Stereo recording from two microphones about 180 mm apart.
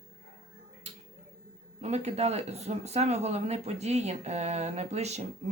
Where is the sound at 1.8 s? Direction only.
35° right (ahead or behind).